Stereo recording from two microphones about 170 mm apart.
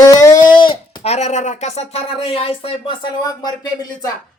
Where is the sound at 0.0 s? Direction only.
20° left (ahead or behind).